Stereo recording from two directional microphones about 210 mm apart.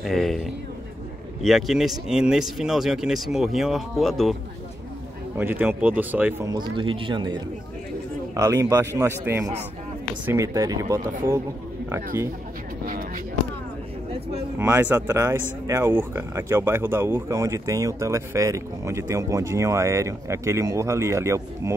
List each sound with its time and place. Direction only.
0.0 s speech: centre (ahead or behind)
5.4 s speech: 10° right (ahead or behind)
12.1 s speech: 10° right (ahead or behind)
12.8 s a sound: 40° right (ahead or behind)
14.6 s speech: 10° right (ahead or behind)